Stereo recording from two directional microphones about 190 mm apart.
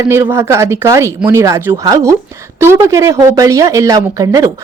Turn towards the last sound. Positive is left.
turn(degrees=-20)  # may be behind; listen again after turning